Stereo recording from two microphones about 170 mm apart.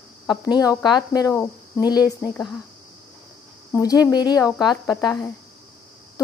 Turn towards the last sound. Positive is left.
turn(degrees=20)  # may be behind; listen again after turning